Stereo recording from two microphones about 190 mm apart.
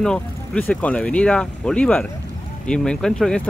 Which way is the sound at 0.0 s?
5° left (ahead or behind).